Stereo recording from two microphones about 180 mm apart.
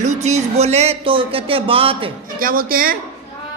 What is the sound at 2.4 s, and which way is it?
Speech, 55° right (ahead or behind).